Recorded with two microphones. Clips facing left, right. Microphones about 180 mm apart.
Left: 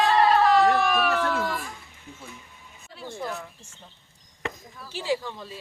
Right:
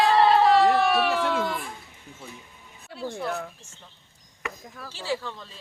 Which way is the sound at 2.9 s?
65° right (ahead or behind).